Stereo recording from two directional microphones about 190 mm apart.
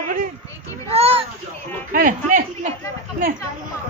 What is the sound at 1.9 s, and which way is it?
Speech, 45° right (ahead or behind).